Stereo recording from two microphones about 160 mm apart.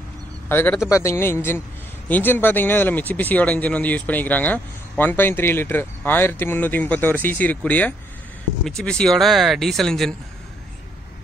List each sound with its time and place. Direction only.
0.5 s speech: 15° left (ahead or behind)